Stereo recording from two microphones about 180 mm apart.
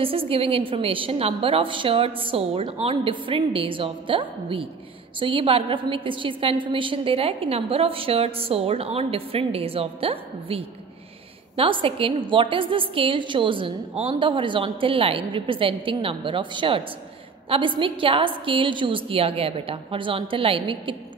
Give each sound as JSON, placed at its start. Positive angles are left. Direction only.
{"t": 0.0, "sound": "a woman's voice", "side_deg": -30}